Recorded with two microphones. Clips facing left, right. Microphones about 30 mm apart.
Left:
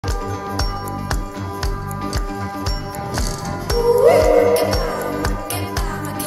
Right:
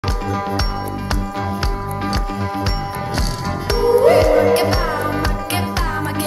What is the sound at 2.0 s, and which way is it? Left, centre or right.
Music, right.